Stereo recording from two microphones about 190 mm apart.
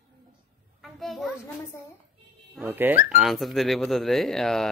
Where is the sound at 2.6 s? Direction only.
10° right (ahead or behind).